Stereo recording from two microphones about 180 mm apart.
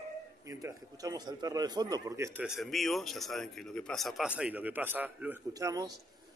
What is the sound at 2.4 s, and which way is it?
A man's voice, centre (ahead or behind).